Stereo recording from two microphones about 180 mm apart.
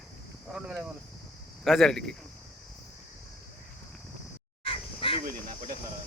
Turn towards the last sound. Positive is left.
turn(degrees=-50)  # may be behind; listen again after turning